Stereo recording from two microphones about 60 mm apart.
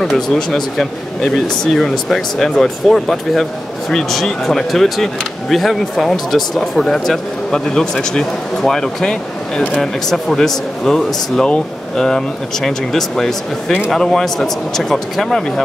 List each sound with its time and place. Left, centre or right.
0.0 s speech: centre